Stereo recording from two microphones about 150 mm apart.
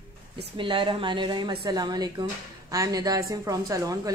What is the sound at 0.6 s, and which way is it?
A woman's voice, 35° right (ahead or behind).